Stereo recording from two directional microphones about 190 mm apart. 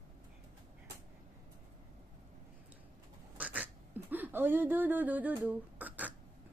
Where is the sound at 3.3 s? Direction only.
10° right (ahead or behind).